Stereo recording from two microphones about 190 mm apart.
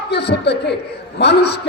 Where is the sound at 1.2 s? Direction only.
60° left (ahead or behind).